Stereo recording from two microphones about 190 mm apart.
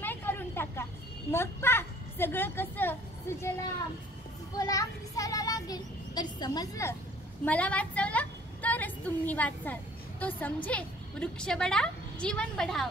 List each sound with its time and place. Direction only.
0.0 s vehicle: 10° left (ahead or behind)
1.3 s a woman's voice: 10° left (ahead or behind)
4.6 s a child's voice: 20° left (ahead or behind)
7.4 s a sound: 5° left (ahead or behind)
10.2 s a woman's voice: 10° left (ahead or behind)